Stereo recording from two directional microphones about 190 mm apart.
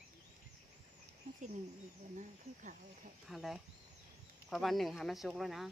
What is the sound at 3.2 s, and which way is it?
Speech, centre (ahead or behind).